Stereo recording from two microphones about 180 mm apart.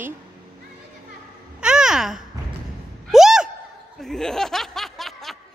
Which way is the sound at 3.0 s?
Centre (ahead or behind).